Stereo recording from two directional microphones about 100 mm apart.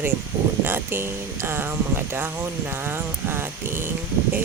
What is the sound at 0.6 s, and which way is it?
Speech, 20° right (ahead or behind).